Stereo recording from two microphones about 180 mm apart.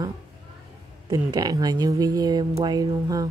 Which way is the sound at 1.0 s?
20° right (ahead or behind).